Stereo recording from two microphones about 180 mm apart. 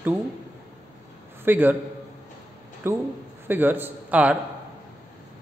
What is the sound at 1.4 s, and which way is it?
Speech, 10° right (ahead or behind).